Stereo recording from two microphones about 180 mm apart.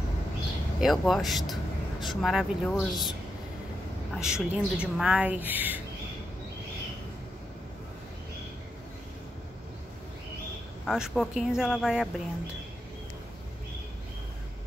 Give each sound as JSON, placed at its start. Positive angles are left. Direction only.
{"t": 0.7, "sound": "speech", "side_deg": 0}
{"t": 10.9, "sound": "speech", "side_deg": -5}